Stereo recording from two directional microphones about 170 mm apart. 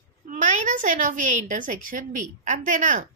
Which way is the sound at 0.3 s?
45° right (ahead or behind).